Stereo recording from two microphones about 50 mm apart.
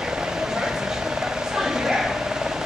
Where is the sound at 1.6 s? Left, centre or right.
Centre.